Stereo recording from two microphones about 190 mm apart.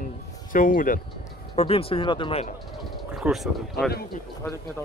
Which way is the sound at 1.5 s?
30° left (ahead or behind).